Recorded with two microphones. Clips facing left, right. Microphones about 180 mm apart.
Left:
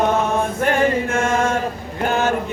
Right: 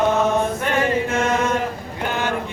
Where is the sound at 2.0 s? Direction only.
45° left (ahead or behind).